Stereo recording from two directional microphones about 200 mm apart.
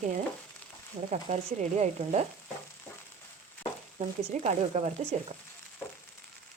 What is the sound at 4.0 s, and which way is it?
Speech, 35° right (ahead or behind).